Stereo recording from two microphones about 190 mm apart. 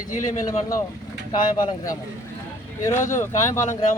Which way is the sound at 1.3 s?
20° left (ahead or behind).